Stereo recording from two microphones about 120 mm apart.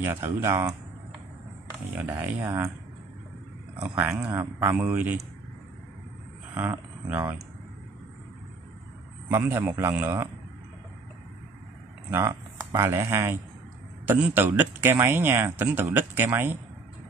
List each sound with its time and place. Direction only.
0.0 s speech: 20° right (ahead or behind)
2.0 s a man's voice: 15° right (ahead or behind)
3.8 s a man's voice: 15° right (ahead or behind)
7.1 s a man's voice: 15° right (ahead or behind)
9.3 s speech: 20° right (ahead or behind)
12.1 s a man's voice: 20° right (ahead or behind)